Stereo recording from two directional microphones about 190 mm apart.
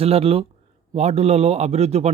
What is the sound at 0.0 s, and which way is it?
Speech, 30° right (ahead or behind).